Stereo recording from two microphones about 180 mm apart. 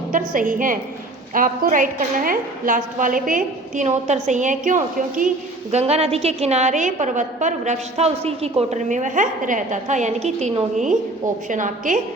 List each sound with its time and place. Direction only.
0.1 s a woman's voice: 45° right (ahead or behind)
5.7 s a woman's voice: 35° right (ahead or behind)